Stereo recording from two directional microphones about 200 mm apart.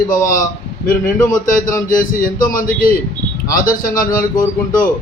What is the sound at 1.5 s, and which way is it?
A man's voice, 40° left (ahead or behind).